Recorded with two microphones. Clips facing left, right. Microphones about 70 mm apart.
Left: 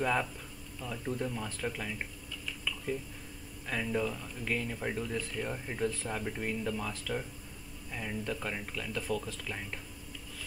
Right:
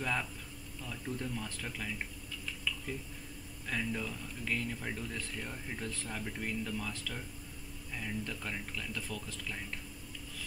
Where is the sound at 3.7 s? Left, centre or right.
Centre.